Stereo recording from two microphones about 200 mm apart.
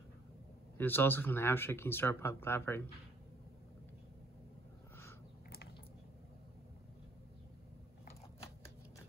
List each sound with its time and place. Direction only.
0.7 s speech: 10° left (ahead or behind)